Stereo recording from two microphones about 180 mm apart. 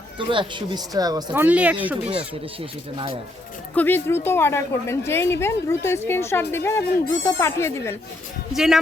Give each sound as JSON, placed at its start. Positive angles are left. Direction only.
{"t": 0.2, "sound": "speech", "side_deg": -25}
{"t": 1.3, "sound": "speech", "side_deg": -10}
{"t": 2.1, "sound": "speech", "side_deg": -30}
{"t": 3.8, "sound": "a woman's voice", "side_deg": 10}
{"t": 8.5, "sound": "speech", "side_deg": 0}